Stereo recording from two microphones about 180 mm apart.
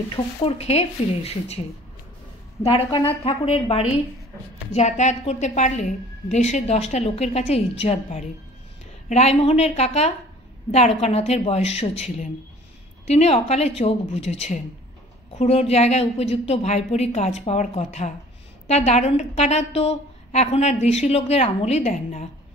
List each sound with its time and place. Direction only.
0.1 s a woman's voice: 30° left (ahead or behind)
2.6 s a woman's voice: 30° left (ahead or behind)